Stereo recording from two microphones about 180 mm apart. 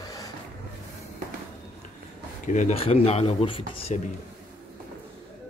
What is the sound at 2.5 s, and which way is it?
Speech, 40° left (ahead or behind).